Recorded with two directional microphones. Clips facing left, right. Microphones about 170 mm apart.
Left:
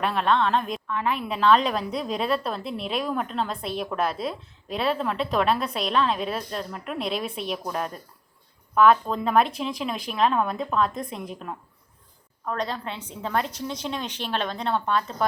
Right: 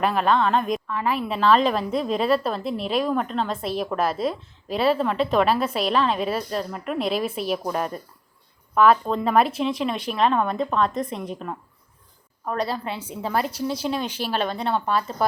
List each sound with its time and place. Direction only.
0.0 s a woman's voice: centre (ahead or behind)
8.7 s a woman's voice: centre (ahead or behind)